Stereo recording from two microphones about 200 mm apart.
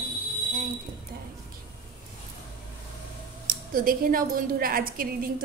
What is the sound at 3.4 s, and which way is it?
A woman's voice, 45° right (ahead or behind).